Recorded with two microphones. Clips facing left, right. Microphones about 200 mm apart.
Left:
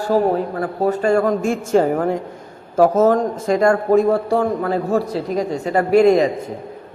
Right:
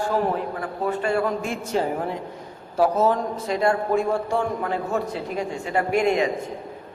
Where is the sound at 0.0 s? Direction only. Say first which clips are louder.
Left 6 dB; 40° left (ahead or behind).